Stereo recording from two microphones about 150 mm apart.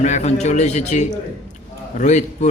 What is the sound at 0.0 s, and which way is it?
A man's voice, 50° left (ahead or behind).